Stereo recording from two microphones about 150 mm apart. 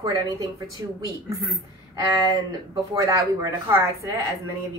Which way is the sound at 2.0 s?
25° right (ahead or behind).